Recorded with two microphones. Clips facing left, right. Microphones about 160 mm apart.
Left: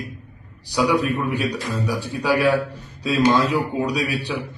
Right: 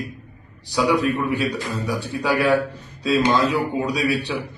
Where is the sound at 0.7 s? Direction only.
15° left (ahead or behind).